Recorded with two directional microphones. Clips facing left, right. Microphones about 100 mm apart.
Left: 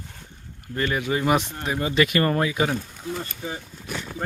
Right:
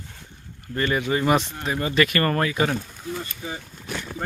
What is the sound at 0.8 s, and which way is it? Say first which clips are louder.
Speech: right 1 dB; centre (ahead or behind).